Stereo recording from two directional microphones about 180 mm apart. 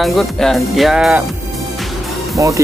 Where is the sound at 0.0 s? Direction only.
Centre (ahead or behind).